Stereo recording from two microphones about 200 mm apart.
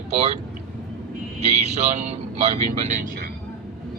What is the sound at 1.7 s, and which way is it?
Speech, 35° right (ahead or behind).